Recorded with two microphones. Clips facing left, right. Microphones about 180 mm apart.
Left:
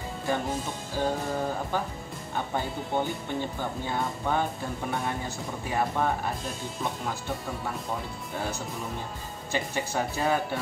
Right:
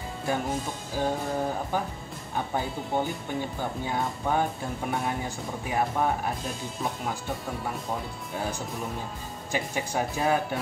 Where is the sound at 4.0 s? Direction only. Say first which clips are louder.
Right 1 dB; 10° right (ahead or behind).